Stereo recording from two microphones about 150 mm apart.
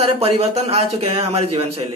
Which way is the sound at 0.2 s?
45° right (ahead or behind).